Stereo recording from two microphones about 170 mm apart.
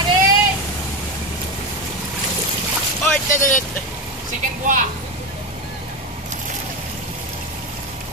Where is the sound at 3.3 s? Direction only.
50° left (ahead or behind).